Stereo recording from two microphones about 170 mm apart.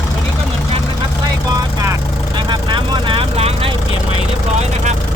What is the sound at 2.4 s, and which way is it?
Vehicle, 25° right (ahead or behind).